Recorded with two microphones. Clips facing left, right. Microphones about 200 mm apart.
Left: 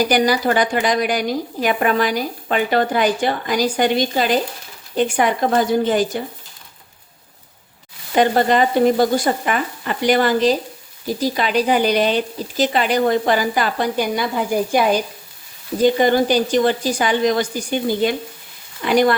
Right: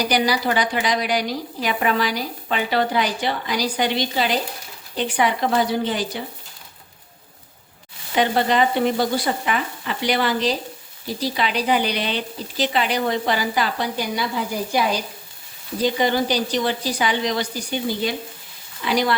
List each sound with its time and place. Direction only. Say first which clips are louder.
0.0 s a woman's voice: left 4 dB; 45° left (ahead or behind)
8.1 s a woman's voice: left 4 dB; 45° left (ahead or behind)